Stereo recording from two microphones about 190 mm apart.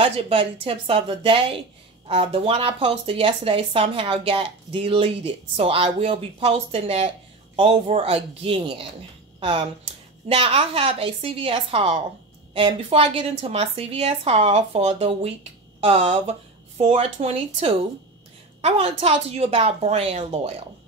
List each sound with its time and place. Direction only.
0.0 s a woman's voice: 30° right (ahead or behind)